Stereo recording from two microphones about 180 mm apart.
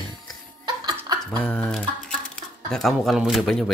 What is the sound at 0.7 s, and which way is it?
Laughter, 20° right (ahead or behind).